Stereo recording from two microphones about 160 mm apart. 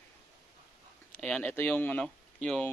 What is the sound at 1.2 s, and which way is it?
Speech, 10° left (ahead or behind).